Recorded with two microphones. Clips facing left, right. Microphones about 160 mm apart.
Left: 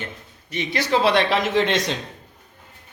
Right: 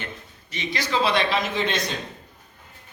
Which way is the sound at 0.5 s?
60° left (ahead or behind).